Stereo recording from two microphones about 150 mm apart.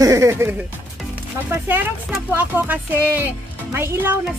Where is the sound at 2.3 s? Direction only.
10° right (ahead or behind).